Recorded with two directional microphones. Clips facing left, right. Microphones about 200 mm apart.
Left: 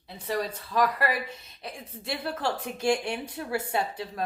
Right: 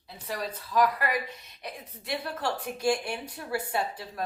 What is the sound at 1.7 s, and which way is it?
A woman's voice, 25° left (ahead or behind).